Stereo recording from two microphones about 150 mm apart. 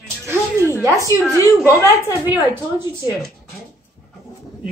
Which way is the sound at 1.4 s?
20° left (ahead or behind).